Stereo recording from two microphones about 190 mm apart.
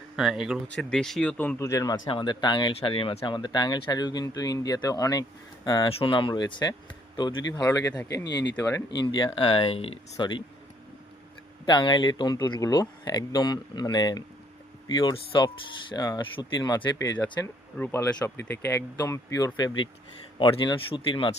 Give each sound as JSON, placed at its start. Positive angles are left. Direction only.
{"t": 0.2, "sound": "speech", "side_deg": -5}
{"t": 8.2, "sound": "speech", "side_deg": 65}
{"t": 8.5, "sound": "speech", "side_deg": 15}
{"t": 11.6, "sound": "speech", "side_deg": 25}